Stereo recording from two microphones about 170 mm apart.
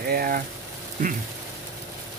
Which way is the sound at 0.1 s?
60° right (ahead or behind).